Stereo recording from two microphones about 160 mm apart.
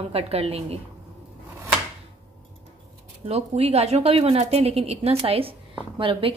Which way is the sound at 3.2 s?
40° right (ahead or behind).